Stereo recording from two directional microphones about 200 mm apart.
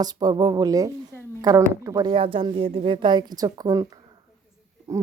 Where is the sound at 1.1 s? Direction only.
10° left (ahead or behind).